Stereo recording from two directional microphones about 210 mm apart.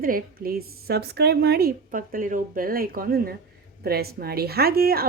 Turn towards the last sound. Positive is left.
turn(degrees=-45)  # may be behind; listen again after turning